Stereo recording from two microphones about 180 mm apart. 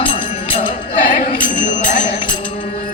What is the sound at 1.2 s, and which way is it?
Music, 45° left (ahead or behind).